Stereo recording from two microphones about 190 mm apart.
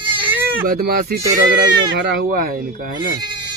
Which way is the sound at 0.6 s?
50° right (ahead or behind).